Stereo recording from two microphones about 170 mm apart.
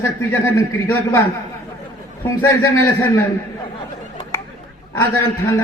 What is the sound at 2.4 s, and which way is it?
Speech, 15° left (ahead or behind).